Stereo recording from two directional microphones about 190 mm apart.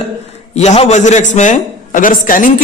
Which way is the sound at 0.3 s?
35° left (ahead or behind).